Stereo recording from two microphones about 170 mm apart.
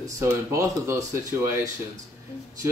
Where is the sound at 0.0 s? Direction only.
15° right (ahead or behind).